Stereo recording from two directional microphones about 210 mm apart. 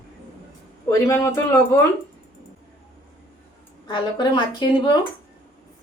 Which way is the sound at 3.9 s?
20° left (ahead or behind).